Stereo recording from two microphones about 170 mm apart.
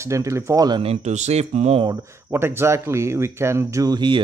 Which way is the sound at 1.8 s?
15° right (ahead or behind).